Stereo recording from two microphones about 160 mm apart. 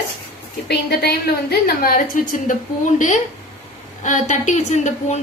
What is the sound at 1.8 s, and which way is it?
Speech, 60° left (ahead or behind).